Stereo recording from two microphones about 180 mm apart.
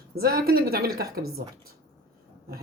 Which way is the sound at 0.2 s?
55° right (ahead or behind).